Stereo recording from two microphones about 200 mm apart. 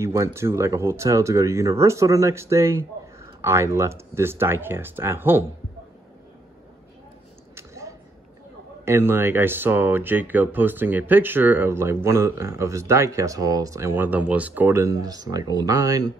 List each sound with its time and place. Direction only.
0.0 s speech: 15° right (ahead or behind)
7.5 s a sound: 15° right (ahead or behind)
8.8 s speech: 10° right (ahead or behind)